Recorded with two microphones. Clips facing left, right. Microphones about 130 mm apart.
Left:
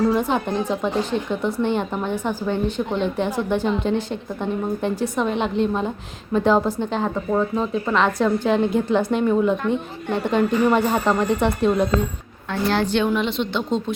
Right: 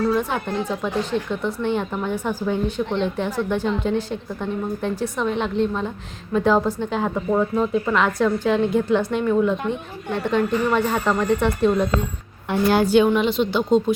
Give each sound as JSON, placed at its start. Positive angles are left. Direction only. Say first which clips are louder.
{"t": 0.1, "sound": "a woman's voice", "louder": "left 2 dB", "side_deg": 20}
{"t": 1.4, "sound": "a woman's voice", "louder": "left 1 dB", "side_deg": 0}
{"t": 12.5, "sound": "a woman's voice", "louder": "right 3 dB", "side_deg": -15}